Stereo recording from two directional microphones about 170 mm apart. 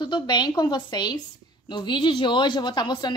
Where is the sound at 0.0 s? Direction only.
25° left (ahead or behind).